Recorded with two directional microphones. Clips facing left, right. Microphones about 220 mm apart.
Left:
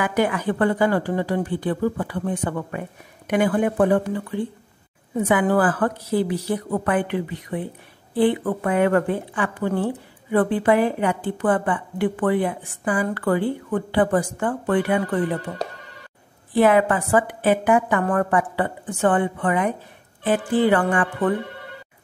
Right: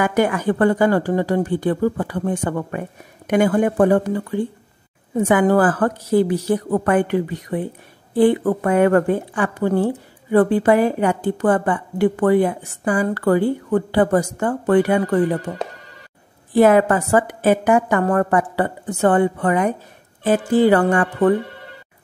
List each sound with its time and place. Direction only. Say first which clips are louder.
0.0 s a woman's voice: right 3 dB; 45° right (ahead or behind)
16.5 s a woman's voice: right 4 dB; 45° right (ahead or behind)